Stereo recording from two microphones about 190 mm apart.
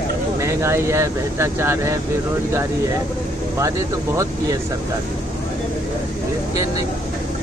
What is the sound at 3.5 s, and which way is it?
Speech, 15° right (ahead or behind).